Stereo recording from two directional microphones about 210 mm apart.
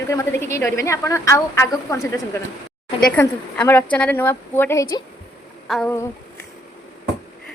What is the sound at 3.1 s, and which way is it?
A woman's voice, 10° left (ahead or behind).